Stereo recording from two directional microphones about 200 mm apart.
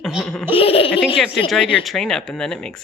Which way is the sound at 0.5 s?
30° left (ahead or behind).